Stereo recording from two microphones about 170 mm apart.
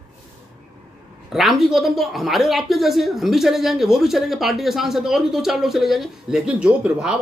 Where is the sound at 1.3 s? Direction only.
Centre (ahead or behind).